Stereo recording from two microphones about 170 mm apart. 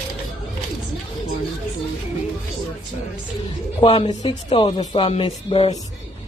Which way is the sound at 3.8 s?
35° left (ahead or behind).